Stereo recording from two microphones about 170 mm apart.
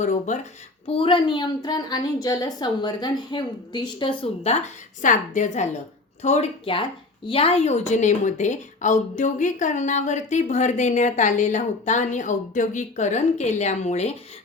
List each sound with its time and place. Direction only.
0.0 s speech: 45° left (ahead or behind)
0.9 s a woman's voice: 30° left (ahead or behind)
5.0 s a woman's voice: 50° left (ahead or behind)